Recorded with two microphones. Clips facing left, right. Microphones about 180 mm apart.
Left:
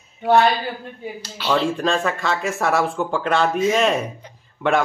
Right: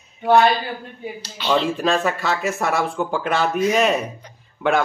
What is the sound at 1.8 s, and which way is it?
Speech, 5° right (ahead or behind).